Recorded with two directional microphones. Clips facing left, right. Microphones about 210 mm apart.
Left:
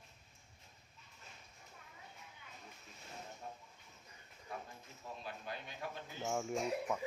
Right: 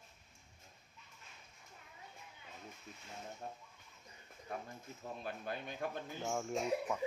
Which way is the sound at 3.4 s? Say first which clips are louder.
Right 2 dB; 40° right (ahead or behind).